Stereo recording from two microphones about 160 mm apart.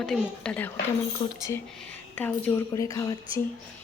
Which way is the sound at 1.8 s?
10° left (ahead or behind).